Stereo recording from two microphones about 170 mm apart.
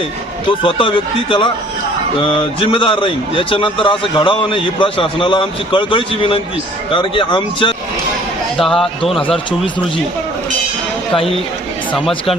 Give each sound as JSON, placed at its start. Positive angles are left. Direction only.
{"t": 0.6, "sound": "a man's voice", "side_deg": 30}
{"t": 8.5, "sound": "speech", "side_deg": 0}